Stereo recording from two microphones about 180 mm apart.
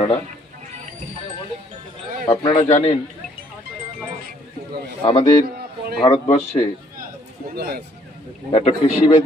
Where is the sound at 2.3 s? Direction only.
35° left (ahead or behind).